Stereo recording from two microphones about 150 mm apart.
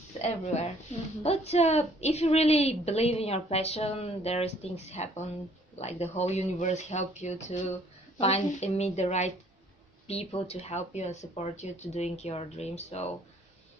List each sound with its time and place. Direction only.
0.2 s a woman's voice: 45° left (ahead or behind)